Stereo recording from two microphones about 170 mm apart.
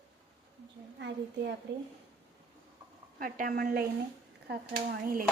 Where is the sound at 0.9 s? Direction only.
90° right.